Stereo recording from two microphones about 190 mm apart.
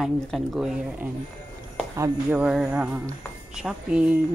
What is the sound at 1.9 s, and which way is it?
Speech, 15° right (ahead or behind).